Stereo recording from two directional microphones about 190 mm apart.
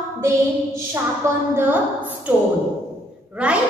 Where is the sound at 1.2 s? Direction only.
15° right (ahead or behind).